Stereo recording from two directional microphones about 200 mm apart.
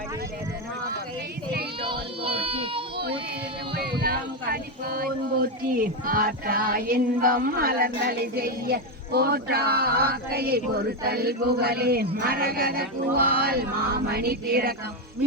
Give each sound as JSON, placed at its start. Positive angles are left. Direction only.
{"t": 1.8, "sound": "child singing", "side_deg": -25}
{"t": 3.8, "sound": "a sound", "side_deg": -50}
{"t": 12.2, "sound": "music", "side_deg": -50}